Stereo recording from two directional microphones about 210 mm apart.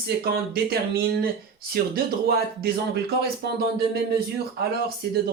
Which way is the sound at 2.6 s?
50° right (ahead or behind).